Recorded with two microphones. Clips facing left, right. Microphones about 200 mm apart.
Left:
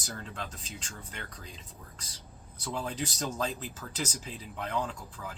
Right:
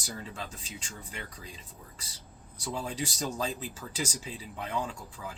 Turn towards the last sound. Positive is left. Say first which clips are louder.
# even
turn(degrees=-10)  # may be behind; listen again after turning